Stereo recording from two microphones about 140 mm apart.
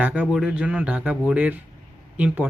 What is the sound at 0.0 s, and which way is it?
Speech, 10° right (ahead or behind).